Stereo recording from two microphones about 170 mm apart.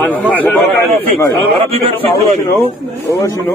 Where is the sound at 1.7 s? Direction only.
35° right (ahead or behind).